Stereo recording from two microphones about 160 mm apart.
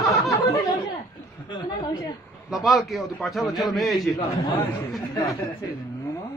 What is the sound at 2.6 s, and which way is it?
A man's voice, centre (ahead or behind).